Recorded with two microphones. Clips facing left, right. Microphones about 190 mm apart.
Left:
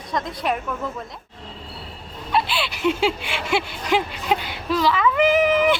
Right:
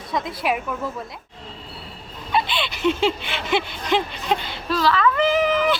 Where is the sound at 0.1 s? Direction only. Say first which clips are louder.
Right 1 dB; 5° right (ahead or behind).